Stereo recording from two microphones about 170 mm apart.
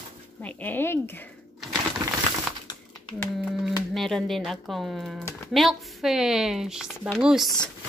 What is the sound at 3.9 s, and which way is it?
Speech, centre (ahead or behind).